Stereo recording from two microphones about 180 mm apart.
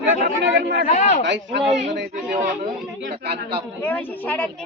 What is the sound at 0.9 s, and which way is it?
Speech, 40° left (ahead or behind).